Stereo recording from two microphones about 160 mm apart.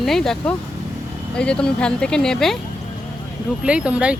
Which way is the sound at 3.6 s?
5° right (ahead or behind).